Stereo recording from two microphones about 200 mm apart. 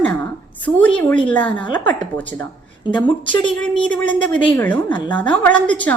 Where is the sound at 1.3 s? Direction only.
5° left (ahead or behind).